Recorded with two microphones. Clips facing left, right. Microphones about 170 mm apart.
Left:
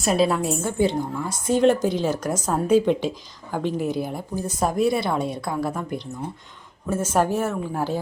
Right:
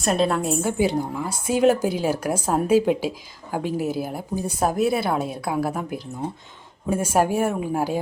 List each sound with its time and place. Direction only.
0.0 s a woman's voice: centre (ahead or behind)